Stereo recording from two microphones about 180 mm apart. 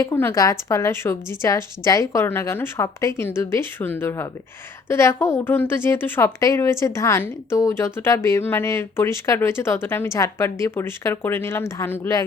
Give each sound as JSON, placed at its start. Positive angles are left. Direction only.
{"t": 0.0, "sound": "a woman's voice", "side_deg": 15}